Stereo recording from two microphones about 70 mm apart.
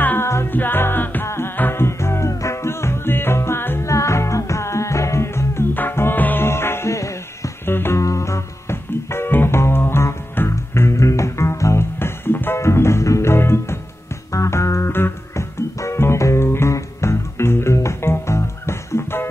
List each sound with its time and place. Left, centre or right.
0.0 s music: left
1.2 s music: left
7.6 s music: left
8.0 s music: left